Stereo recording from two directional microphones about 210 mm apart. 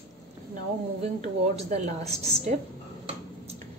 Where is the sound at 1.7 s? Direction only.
35° right (ahead or behind).